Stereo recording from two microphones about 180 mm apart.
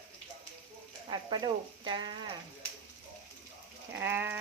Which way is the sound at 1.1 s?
25° right (ahead or behind).